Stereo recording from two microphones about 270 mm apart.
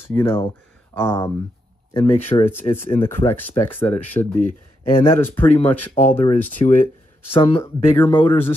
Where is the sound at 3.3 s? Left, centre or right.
Centre.